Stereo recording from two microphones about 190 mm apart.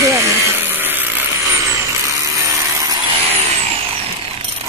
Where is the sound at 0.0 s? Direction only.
15° right (ahead or behind).